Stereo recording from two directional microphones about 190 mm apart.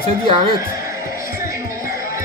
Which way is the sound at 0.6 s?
15° right (ahead or behind).